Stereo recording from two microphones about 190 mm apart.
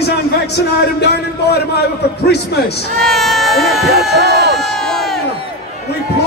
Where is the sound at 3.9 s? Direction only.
55° right (ahead or behind).